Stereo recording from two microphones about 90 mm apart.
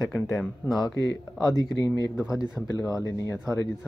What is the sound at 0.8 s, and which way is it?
Speech, 45° left (ahead or behind).